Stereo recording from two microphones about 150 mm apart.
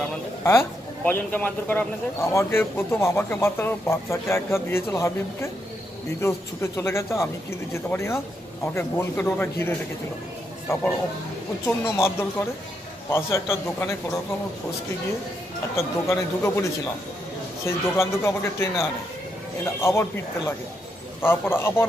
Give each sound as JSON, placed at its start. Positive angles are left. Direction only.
{"t": 0.4, "sound": "a man's voice", "side_deg": 15}
{"t": 11.6, "sound": "a man's voice", "side_deg": 15}
{"t": 15.7, "sound": "a man's voice", "side_deg": 15}
{"t": 17.6, "sound": "a man's voice", "side_deg": 15}